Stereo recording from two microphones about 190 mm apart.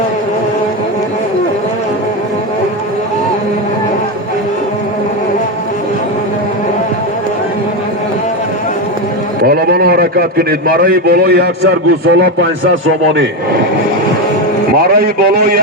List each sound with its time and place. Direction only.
9.4 s a man's voice: 55° right (ahead or behind)
15.0 s a man's voice: 50° right (ahead or behind)